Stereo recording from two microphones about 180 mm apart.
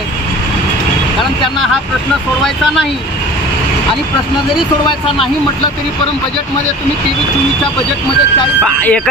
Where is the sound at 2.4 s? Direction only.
Centre (ahead or behind).